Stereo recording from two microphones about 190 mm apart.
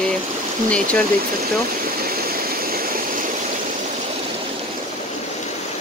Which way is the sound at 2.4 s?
50° right (ahead or behind).